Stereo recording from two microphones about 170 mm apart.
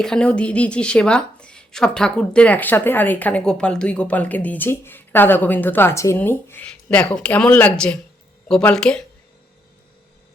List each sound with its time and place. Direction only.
0.0 s a woman's voice: 5° left (ahead or behind)